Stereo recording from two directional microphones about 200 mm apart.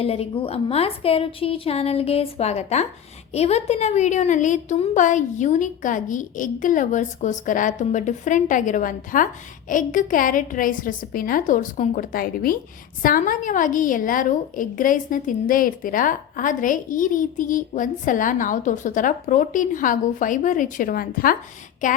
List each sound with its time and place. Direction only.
0.0 s a woman's voice: 30° left (ahead or behind); by 21.3 s 45° left (ahead or behind)